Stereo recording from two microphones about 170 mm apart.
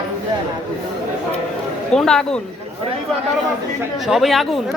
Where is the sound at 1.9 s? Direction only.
5° left (ahead or behind).